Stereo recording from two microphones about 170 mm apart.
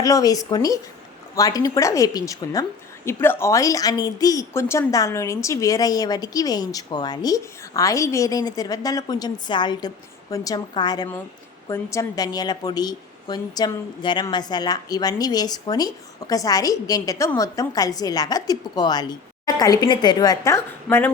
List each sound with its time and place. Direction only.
0.0 s a woman's voice: 20° left (ahead or behind)